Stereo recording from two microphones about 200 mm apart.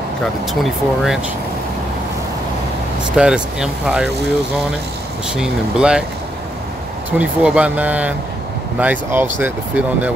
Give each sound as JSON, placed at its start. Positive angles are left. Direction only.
{"t": 0.5, "sound": "speech", "side_deg": 0}
{"t": 3.2, "sound": "speech", "side_deg": -5}
{"t": 5.3, "sound": "speech", "side_deg": -5}
{"t": 7.1, "sound": "speech", "side_deg": -5}